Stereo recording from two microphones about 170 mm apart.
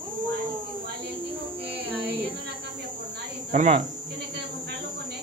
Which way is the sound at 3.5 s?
45° right (ahead or behind).